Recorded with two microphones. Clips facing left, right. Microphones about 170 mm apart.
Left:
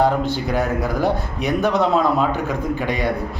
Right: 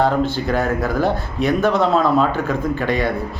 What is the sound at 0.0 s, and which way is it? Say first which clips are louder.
Speech: right 1 dB; 15° left (ahead or behind).